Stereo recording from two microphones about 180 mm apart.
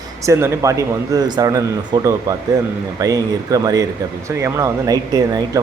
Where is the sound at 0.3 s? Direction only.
15° right (ahead or behind).